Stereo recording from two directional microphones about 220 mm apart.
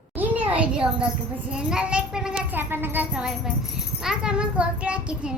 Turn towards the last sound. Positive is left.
turn(degrees=-5)  # may be behind; listen again after turning